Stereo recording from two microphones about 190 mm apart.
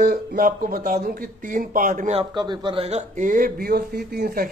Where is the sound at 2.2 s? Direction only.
25° right (ahead or behind).